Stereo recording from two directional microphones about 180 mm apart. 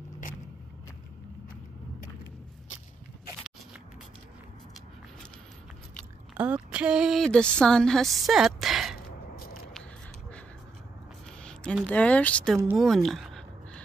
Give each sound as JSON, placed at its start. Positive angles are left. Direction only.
{"t": 6.3, "sound": "speech", "side_deg": -10}
{"t": 9.3, "sound": "a sound", "side_deg": 60}
{"t": 11.4, "sound": "speech", "side_deg": 5}